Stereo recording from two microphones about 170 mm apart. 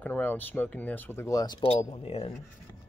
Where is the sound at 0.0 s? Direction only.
10° left (ahead or behind); by 2.4 s 35° left (ahead or behind).